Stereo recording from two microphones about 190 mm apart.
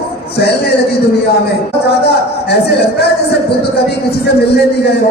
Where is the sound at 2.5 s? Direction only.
60° left (ahead or behind).